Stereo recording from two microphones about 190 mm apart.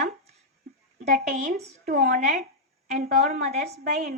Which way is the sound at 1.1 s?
40° right (ahead or behind).